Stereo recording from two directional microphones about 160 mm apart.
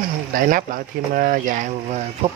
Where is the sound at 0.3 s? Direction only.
60° right (ahead or behind).